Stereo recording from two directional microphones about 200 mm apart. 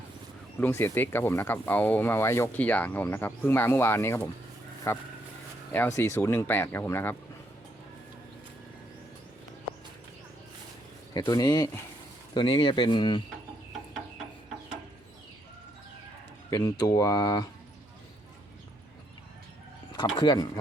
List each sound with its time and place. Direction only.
0.6 s speech: 10° left (ahead or behind)
11.1 s speech: 20° left (ahead or behind)
16.5 s speech: 15° left (ahead or behind)
20.1 s speech: 20° left (ahead or behind)